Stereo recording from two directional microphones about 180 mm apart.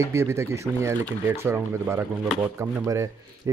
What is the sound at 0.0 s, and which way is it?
Speech, 15° right (ahead or behind).